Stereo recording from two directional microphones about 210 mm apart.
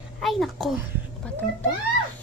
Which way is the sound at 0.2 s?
Centre (ahead or behind).